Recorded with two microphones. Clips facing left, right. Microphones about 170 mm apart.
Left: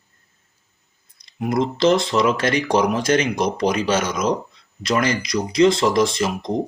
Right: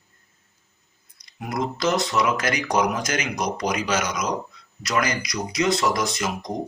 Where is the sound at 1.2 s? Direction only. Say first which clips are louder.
Left 6 dB; 25° left (ahead or behind).